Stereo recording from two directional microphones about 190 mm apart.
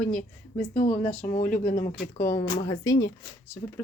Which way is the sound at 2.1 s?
10° left (ahead or behind).